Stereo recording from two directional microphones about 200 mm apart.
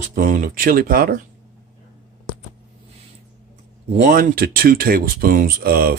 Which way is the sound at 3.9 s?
40° right (ahead or behind).